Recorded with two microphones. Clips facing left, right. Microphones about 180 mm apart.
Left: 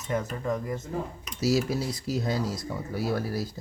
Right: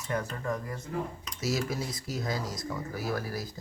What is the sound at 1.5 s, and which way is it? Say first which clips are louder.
Speech: left 5 dB; 30° left (ahead or behind).